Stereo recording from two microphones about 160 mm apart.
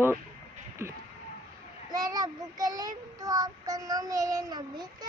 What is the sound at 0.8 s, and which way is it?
A child's voice, 15° right (ahead or behind).